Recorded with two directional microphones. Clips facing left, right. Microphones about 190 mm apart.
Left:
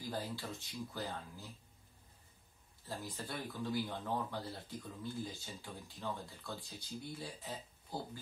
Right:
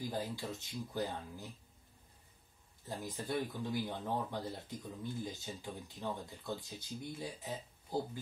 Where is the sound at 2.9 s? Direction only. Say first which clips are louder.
Right 5 dB; 20° right (ahead or behind).